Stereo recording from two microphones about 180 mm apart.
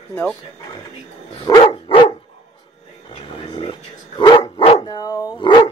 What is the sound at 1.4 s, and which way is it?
Dog, 25° left (ahead or behind).